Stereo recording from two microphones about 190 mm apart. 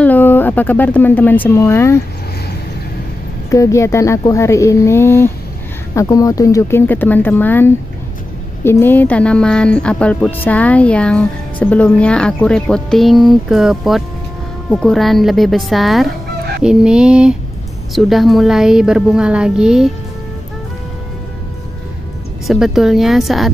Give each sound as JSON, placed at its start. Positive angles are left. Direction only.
{"t": 0.0, "sound": "speech", "side_deg": 10}
{"t": 3.4, "sound": "speech", "side_deg": 15}
{"t": 22.5, "sound": "speech", "side_deg": 0}